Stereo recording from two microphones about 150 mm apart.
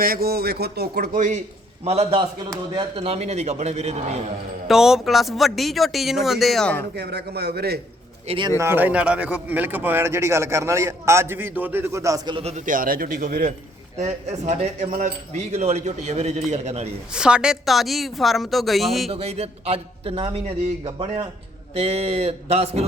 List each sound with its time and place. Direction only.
0.0 s speech: 85° right
1.8 s speech: 45° right (ahead or behind)
4.7 s speech: 5° right (ahead or behind)
6.9 s speech: 90° right
8.3 s a man's voice: 30° right (ahead or behind)
8.5 s speech: 15° right (ahead or behind)
12.4 s speech: 45° right (ahead or behind)
12.6 s speech: 70° right (ahead or behind)
14.0 s speech: 50° right (ahead or behind)
17.1 s speech: 5° right (ahead or behind)
19.1 s a man's voice: 45° right (ahead or behind)